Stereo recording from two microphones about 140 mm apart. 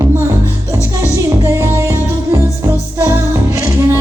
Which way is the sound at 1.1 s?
20° right (ahead or behind).